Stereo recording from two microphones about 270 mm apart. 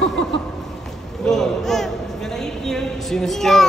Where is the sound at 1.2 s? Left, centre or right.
Centre.